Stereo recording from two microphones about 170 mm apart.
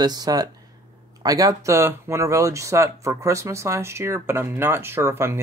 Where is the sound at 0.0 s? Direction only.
25° right (ahead or behind).